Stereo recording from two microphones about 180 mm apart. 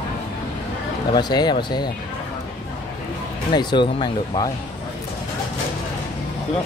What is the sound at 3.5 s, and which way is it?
Speech, 25° left (ahead or behind).